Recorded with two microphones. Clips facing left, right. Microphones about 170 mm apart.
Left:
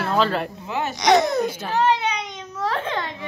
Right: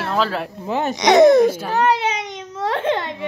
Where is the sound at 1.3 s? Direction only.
90° right.